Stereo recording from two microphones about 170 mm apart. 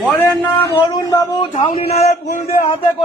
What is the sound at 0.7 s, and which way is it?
Speech, 20° left (ahead or behind).